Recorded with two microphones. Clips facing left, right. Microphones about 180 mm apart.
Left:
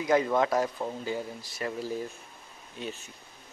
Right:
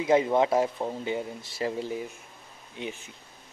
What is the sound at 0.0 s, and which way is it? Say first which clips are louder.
Speech: right 2 dB; 25° right (ahead or behind).